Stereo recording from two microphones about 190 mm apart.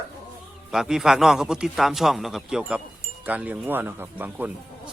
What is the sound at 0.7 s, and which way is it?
Speech, centre (ahead or behind).